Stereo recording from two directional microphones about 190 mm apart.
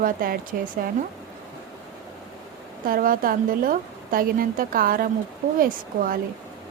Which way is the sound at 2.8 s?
50° right (ahead or behind).